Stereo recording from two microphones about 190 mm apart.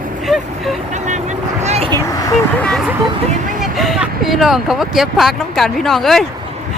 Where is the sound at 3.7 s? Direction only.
Centre (ahead or behind).